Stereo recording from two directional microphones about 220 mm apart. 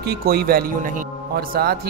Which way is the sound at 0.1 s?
45° right (ahead or behind).